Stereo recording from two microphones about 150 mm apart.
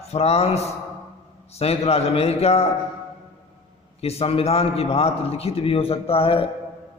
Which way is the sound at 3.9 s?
45° left (ahead or behind).